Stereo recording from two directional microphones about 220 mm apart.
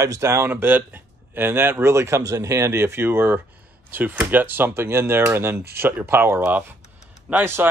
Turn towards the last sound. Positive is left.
turn(degrees=-10)  # may be behind; listen again after turning